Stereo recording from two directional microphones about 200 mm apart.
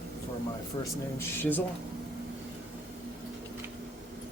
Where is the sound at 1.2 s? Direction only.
10° left (ahead or behind).